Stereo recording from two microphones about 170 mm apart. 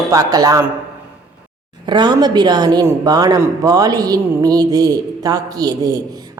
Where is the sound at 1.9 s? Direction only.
25° right (ahead or behind).